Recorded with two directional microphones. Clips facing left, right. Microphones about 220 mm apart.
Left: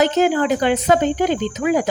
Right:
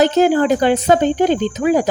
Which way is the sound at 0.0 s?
35° right (ahead or behind).